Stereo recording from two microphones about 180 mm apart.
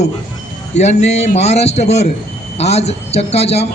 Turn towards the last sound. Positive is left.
turn(degrees=35)  # may be behind; listen again after turning